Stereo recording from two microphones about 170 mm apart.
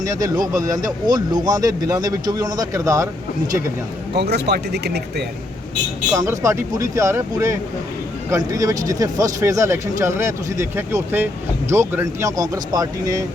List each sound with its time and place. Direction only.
0.0 s speech: 20° right (ahead or behind)
4.1 s speech: 80° right
6.1 s speech: 20° right (ahead or behind)